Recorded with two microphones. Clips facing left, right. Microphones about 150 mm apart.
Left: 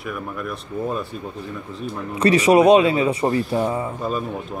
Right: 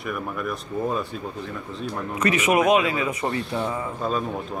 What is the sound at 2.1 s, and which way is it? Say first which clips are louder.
Speech: left 6 dB; 30° left (ahead or behind).